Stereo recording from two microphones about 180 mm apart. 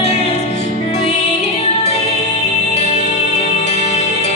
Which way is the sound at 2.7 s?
40° left (ahead or behind).